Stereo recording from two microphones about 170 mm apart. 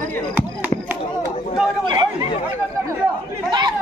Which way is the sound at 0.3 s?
10° right (ahead or behind).